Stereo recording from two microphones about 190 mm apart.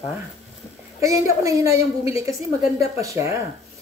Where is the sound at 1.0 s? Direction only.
15° right (ahead or behind).